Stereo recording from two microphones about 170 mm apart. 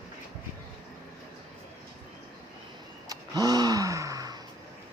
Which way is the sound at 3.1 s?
20° right (ahead or behind).